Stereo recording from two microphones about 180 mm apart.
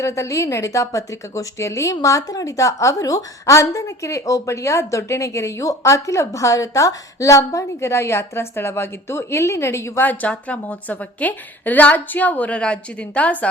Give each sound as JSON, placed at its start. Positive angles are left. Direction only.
{"t": 0.0, "sound": "a woman's voice", "side_deg": 15}